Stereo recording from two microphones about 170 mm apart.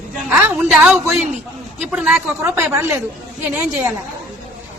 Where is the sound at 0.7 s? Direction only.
5° right (ahead or behind).